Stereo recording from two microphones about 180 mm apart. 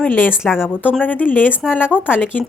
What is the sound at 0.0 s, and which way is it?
Speech, 10° left (ahead or behind).